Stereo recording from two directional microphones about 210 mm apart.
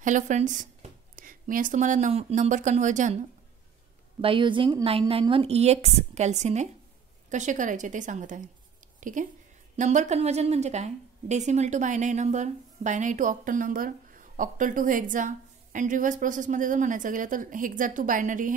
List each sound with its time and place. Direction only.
0.0 s a woman's voice: 35° right (ahead or behind)
4.2 s a woman's voice: 25° right (ahead or behind)